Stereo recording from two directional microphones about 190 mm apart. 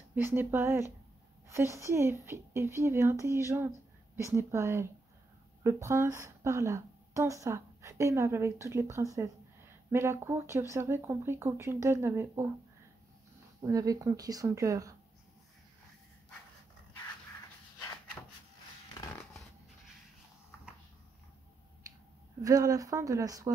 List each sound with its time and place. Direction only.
0.1 s a woman's voice: 10° right (ahead or behind)
13.6 s a woman's voice: 20° right (ahead or behind)
18.9 s a sound: 15° left (ahead or behind)
22.4 s a woman's voice: 20° right (ahead or behind)